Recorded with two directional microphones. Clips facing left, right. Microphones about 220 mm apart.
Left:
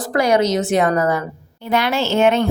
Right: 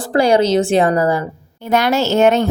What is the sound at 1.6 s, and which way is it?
Speech, 45° right (ahead or behind).